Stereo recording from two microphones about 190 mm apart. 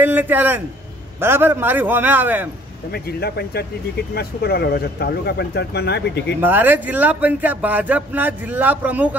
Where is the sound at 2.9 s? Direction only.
55° left (ahead or behind).